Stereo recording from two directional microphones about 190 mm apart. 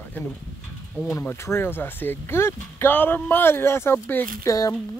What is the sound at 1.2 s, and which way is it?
Speech, 15° left (ahead or behind).